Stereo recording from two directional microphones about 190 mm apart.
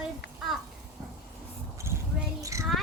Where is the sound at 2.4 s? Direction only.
15° right (ahead or behind).